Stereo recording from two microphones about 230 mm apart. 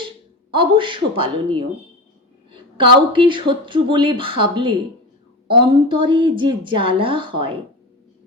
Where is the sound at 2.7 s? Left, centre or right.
Right.